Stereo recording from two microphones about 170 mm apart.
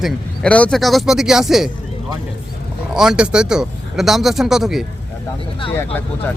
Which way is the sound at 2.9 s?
5° right (ahead or behind).